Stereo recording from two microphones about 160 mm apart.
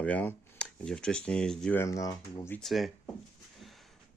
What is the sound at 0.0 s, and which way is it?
Speech, 10° left (ahead or behind).